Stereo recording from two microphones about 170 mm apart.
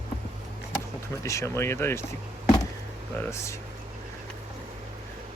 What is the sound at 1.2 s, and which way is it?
Speech, 15° left (ahead or behind).